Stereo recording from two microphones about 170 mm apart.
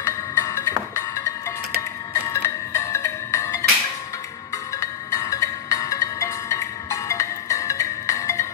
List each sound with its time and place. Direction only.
0.0 s music: 15° left (ahead or behind)
4.7 s music: 20° left (ahead or behind)